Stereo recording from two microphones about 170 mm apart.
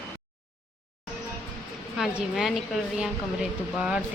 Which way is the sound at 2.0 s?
Centre (ahead or behind).